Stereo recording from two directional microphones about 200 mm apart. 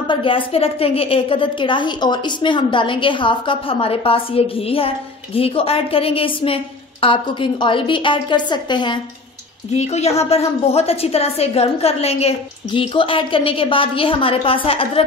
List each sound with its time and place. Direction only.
0.1 s a woman's voice: 25° left (ahead or behind)
9.8 s a woman's voice: 35° left (ahead or behind)